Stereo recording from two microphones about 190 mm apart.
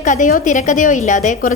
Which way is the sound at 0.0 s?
40° left (ahead or behind).